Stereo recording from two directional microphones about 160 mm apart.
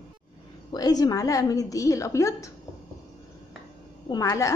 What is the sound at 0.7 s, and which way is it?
A woman's voice, 25° left (ahead or behind).